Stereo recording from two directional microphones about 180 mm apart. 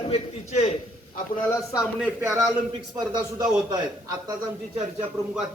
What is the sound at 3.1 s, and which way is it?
Speech, 25° right (ahead or behind).